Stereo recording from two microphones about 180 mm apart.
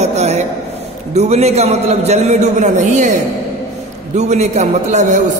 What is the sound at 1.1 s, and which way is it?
A man's voice, 35° right (ahead or behind).